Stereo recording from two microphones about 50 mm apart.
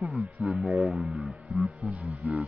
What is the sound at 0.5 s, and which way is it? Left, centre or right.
Speech, centre.